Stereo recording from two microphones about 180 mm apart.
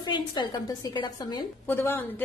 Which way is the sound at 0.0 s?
25° left (ahead or behind).